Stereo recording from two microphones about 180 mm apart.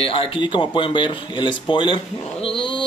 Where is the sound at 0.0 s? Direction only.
30° left (ahead or behind).